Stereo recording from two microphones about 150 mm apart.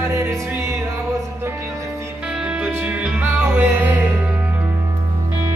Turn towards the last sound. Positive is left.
turn(degrees=-15)  # may be behind; listen again after turning